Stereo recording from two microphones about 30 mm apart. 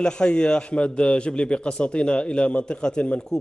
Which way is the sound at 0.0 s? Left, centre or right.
Left.